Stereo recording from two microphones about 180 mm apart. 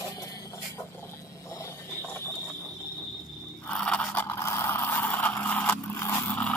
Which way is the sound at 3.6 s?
5° left (ahead or behind).